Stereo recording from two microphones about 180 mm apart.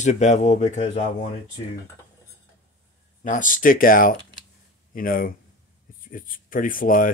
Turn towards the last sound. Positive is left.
turn(degrees=50)  # may be behind; listen again after turning